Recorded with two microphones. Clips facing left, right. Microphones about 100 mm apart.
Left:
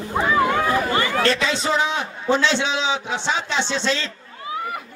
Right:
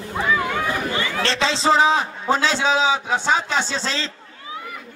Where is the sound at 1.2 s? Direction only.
30° right (ahead or behind).